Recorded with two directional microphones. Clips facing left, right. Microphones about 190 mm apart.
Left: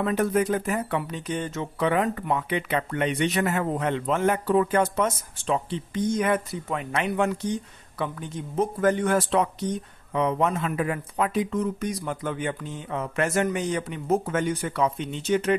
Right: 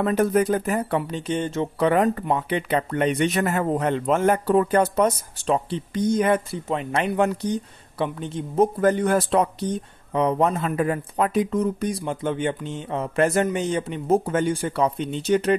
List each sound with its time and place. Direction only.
0.0 s speech: 40° right (ahead or behind)